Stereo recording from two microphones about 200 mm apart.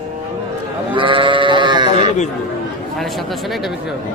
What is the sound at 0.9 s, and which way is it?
Sheep, 25° right (ahead or behind).